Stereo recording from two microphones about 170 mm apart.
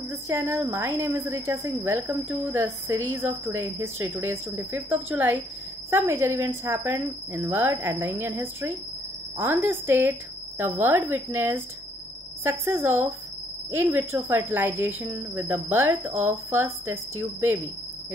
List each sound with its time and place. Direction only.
0.1 s a woman's voice: 15° right (ahead or behind)